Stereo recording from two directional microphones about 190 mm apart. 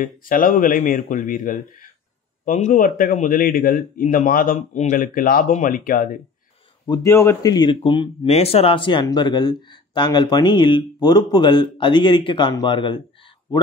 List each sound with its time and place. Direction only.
0.0 s a man's voice: 45° left (ahead or behind)
6.9 s a man's voice: 15° left (ahead or behind)